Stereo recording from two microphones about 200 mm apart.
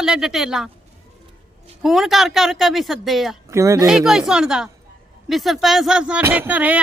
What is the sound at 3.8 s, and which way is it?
A woman's voice, centre (ahead or behind).